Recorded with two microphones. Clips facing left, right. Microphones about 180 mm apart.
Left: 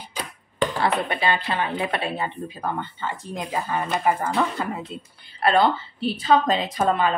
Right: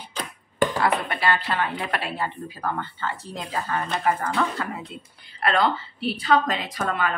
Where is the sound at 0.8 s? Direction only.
20° left (ahead or behind).